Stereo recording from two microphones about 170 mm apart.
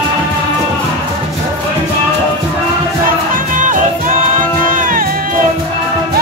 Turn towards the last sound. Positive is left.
turn(degrees=-55)  # may be behind; listen again after turning